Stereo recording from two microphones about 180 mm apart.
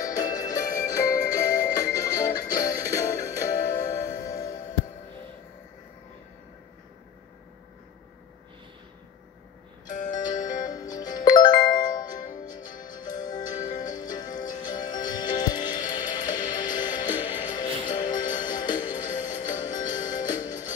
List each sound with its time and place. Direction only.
0.0 s music: 20° left (ahead or behind)
9.8 s music: 45° left (ahead or behind)
10.6 s music: 20° left (ahead or behind)